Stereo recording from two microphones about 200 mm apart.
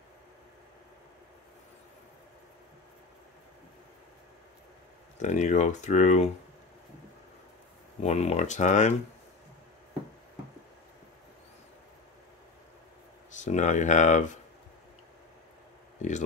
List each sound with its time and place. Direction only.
5.2 s speech: 35° left (ahead or behind)
8.0 s speech: 30° left (ahead or behind)
13.4 s speech: 35° left (ahead or behind)